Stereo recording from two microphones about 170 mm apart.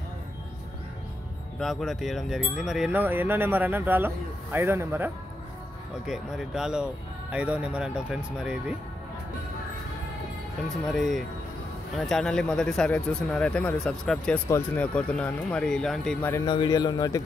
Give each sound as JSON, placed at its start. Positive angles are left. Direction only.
{"t": 1.6, "sound": "wind chime", "side_deg": 0}
{"t": 6.0, "sound": "speech", "side_deg": 0}
{"t": 10.9, "sound": "speech", "side_deg": 0}
{"t": 16.4, "sound": "a man's voice", "side_deg": 25}